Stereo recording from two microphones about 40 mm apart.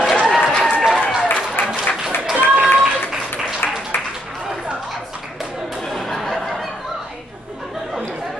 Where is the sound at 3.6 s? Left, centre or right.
Left.